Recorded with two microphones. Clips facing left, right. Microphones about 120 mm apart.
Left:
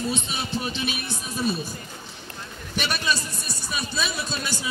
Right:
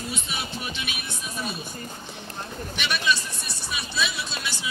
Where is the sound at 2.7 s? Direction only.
40° left (ahead or behind).